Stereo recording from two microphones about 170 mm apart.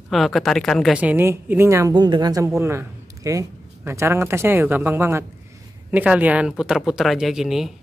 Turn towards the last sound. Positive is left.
turn(degrees=0)  # may be behind; listen again after turning